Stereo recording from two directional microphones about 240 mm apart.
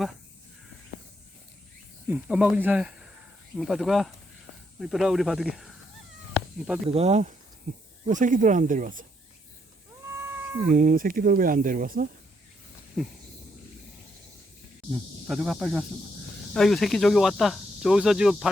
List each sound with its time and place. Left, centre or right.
2.0 s speech: centre
6.3 s a sound: centre
6.9 s speech: right
10.7 s speech: right
13.0 s speech: centre
15.3 s speech: centre